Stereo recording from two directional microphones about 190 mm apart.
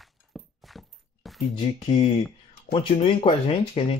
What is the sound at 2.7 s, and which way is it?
Speech, 30° left (ahead or behind).